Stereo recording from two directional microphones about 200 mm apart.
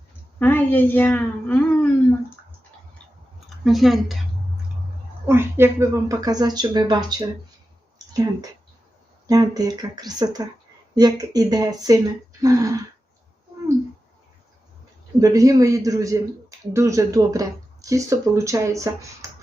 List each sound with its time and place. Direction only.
0.3 s a woman's voice: 10° left (ahead or behind)
3.6 s speech: centre (ahead or behind)
5.2 s speech: 10° right (ahead or behind)
7.9 s a sound: 20° right (ahead or behind)
9.2 s a man's voice: 20° right (ahead or behind)
15.2 s a man's voice: 15° right (ahead or behind)